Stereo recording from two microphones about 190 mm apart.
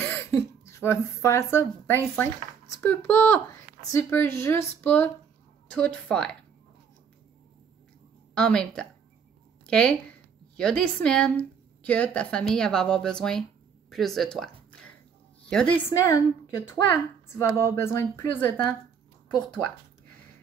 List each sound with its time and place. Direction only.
0.0 s a woman's voice: 10° left (ahead or behind)
8.4 s a woman's voice: 5° left (ahead or behind)
16.0 s speech: 15° left (ahead or behind)